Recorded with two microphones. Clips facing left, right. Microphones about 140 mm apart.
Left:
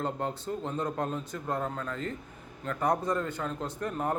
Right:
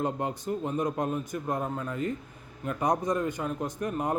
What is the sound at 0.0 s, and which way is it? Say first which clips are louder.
A man's voice: right 2 dB; 15° right (ahead or behind).